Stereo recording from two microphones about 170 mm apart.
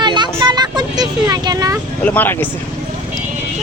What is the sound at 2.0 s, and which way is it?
Speech, 10° left (ahead or behind).